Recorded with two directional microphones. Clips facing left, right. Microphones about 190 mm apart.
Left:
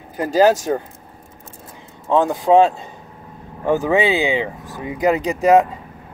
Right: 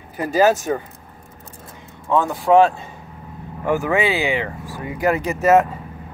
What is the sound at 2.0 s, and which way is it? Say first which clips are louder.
Speech: left 2 dB; 20° left (ahead or behind).